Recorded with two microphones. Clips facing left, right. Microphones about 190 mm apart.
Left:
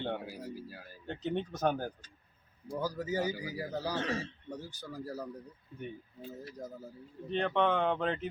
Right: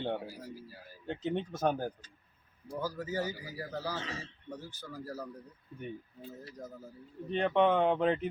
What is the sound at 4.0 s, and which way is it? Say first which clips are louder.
Speech: left 7 dB; 55° left (ahead or behind).